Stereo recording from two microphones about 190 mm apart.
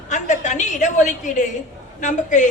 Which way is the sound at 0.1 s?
40° left (ahead or behind).